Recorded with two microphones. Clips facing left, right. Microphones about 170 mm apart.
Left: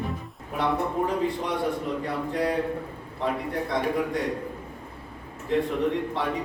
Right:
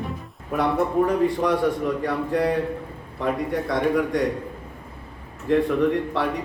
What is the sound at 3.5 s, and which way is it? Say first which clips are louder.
Speech: right 5 dB; 80° right.